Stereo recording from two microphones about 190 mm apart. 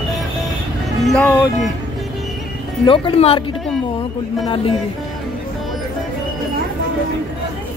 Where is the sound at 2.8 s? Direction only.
25° left (ahead or behind).